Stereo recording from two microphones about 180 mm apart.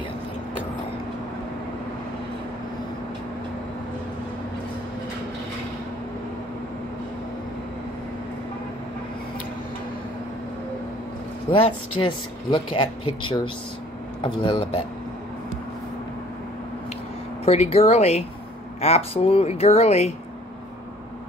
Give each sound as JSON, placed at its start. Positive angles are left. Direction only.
{"t": 12.0, "sound": "speech", "side_deg": 25}
{"t": 17.5, "sound": "speech", "side_deg": 35}